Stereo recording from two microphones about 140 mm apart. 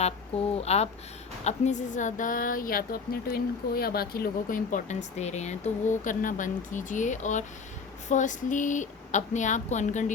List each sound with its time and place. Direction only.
0.0 s speech: 45° left (ahead or behind)